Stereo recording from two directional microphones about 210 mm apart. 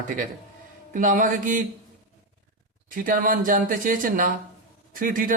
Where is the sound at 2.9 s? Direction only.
40° right (ahead or behind).